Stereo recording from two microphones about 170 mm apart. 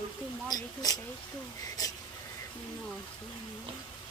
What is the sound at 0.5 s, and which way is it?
Speech, 20° left (ahead or behind).